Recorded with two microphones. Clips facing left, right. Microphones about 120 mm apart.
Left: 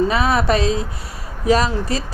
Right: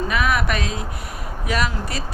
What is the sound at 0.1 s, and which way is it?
Speech, 30° left (ahead or behind).